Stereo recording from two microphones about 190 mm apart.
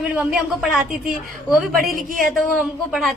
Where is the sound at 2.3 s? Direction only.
Centre (ahead or behind).